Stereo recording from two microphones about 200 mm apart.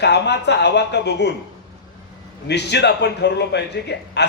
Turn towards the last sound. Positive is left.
turn(degrees=60)  # may be behind; listen again after turning